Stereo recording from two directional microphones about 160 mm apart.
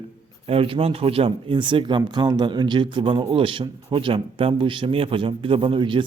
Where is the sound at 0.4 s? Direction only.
35° right (ahead or behind).